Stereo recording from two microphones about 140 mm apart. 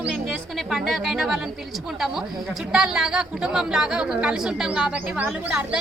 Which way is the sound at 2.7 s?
5° right (ahead or behind).